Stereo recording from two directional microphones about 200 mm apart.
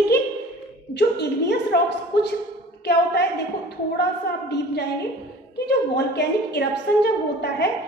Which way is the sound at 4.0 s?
55° left (ahead or behind).